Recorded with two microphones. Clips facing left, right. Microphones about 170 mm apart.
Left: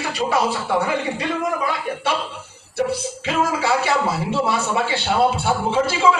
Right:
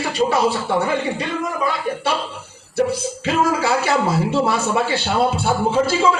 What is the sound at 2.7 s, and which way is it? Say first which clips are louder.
A man's voice: right 3 dB; 40° right (ahead or behind).